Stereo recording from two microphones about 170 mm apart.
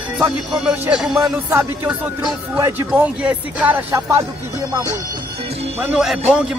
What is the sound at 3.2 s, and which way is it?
Speech, 5° right (ahead or behind).